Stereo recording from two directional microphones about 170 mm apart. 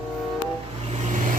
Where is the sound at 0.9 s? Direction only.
45° right (ahead or behind).